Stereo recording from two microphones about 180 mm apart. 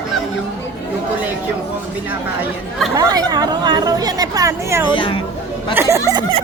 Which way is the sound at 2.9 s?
20° right (ahead or behind).